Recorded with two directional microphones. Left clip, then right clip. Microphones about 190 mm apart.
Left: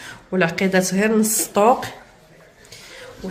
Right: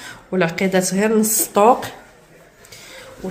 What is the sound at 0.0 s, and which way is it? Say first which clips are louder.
A woman's voice: even; 10° right (ahead or behind).